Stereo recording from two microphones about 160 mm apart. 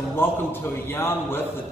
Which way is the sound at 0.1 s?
15° left (ahead or behind).